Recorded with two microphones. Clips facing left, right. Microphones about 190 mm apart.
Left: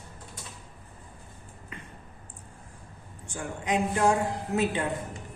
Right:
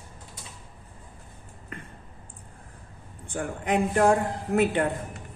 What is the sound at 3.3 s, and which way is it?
A man's voice, 55° right (ahead or behind).